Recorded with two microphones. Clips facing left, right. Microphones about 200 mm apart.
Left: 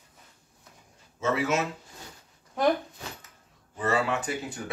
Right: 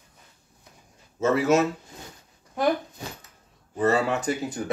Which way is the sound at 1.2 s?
40° right (ahead or behind).